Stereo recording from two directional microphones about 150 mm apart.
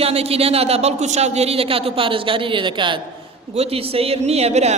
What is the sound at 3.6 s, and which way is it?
Speech, 45° right (ahead or behind).